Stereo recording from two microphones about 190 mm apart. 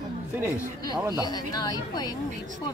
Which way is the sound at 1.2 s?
20° left (ahead or behind).